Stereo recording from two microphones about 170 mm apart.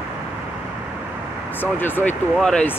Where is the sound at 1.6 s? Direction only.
10° left (ahead or behind).